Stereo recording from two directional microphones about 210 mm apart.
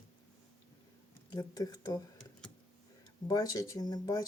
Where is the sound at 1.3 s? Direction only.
15° left (ahead or behind).